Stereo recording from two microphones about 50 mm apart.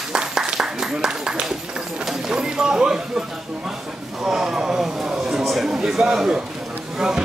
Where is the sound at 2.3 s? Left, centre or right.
Centre.